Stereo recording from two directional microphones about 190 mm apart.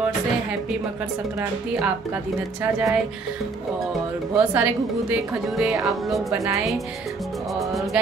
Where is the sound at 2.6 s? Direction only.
15° right (ahead or behind).